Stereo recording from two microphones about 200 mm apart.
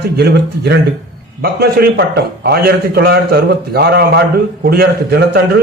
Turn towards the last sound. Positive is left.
turn(degrees=-55)  # may be behind; listen again after turning